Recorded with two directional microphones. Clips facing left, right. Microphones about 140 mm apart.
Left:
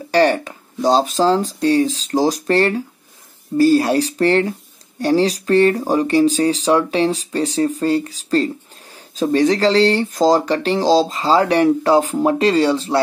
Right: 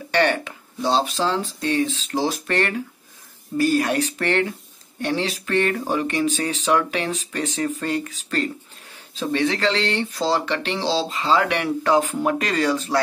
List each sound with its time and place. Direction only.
0.1 s speech: 35° left (ahead or behind)